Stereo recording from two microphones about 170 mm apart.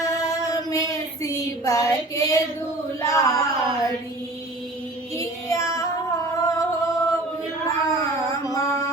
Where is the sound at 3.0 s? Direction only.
20° left (ahead or behind).